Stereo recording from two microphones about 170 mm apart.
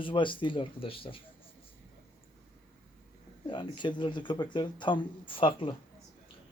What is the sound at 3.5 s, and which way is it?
Speech, 30° left (ahead or behind).